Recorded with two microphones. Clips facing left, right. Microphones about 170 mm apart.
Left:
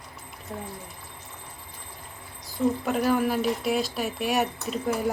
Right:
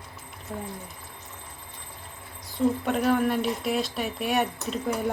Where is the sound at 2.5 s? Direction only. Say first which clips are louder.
Even; centre (ahead or behind).